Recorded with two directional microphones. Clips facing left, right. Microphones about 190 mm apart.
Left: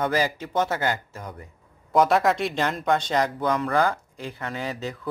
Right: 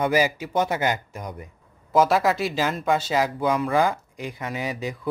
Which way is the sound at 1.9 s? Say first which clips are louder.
Even; centre (ahead or behind).